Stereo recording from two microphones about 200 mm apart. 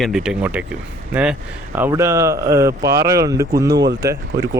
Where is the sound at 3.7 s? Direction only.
55° right (ahead or behind).